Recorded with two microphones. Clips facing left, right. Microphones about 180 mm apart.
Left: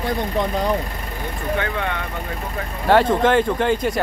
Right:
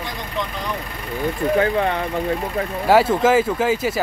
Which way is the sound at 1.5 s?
35° right (ahead or behind).